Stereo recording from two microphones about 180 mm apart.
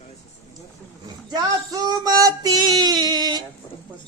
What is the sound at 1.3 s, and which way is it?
Female singing, 20° right (ahead or behind).